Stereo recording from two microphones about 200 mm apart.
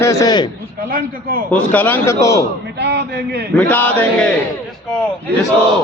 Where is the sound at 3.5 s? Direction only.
10° left (ahead or behind).